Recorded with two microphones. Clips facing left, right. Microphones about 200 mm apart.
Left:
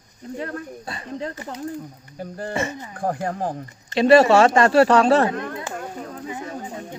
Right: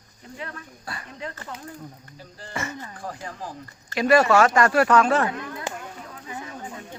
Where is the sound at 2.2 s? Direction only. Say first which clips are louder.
Left 14 dB; 55° left (ahead or behind).